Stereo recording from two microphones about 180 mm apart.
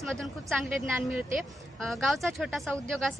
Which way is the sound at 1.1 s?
5° right (ahead or behind).